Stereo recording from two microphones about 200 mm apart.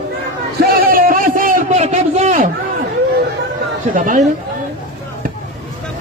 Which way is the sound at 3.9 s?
40° right (ahead or behind).